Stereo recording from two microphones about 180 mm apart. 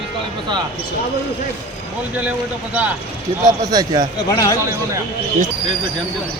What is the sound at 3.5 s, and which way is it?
Speech, 20° right (ahead or behind).